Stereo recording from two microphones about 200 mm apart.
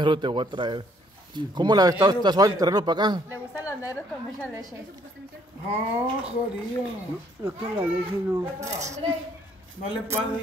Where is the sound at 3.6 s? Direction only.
15° left (ahead or behind).